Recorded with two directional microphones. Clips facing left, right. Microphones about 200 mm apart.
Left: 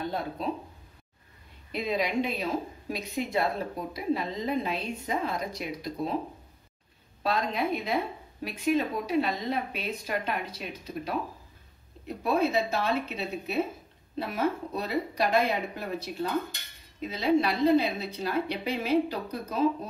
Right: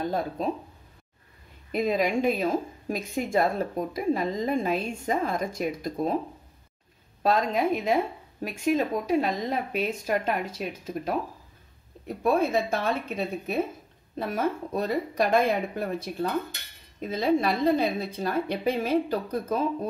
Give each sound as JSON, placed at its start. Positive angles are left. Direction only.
{"t": 0.0, "sound": "speech", "side_deg": -45}
{"t": 1.7, "sound": "a woman's voice", "side_deg": -50}
{"t": 7.2, "sound": "a woman's voice", "side_deg": -45}
{"t": 12.2, "sound": "a woman's voice", "side_deg": -50}